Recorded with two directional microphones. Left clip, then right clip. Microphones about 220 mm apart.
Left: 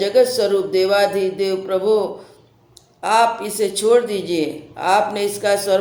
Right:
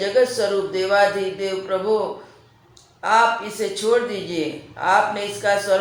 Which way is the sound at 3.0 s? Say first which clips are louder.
Left 1 dB; 55° left (ahead or behind).